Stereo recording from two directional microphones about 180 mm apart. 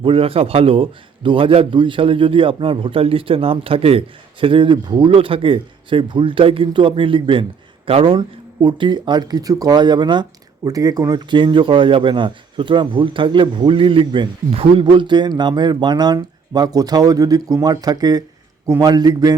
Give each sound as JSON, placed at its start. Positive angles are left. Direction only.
{"t": 0.0, "sound": "a man's voice", "side_deg": -30}